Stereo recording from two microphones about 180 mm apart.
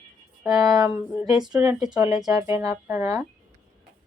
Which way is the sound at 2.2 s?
15° right (ahead or behind).